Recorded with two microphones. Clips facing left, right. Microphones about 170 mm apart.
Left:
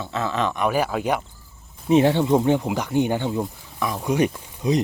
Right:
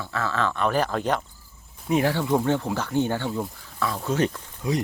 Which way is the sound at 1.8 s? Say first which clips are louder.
Left 6 dB; 20° left (ahead or behind).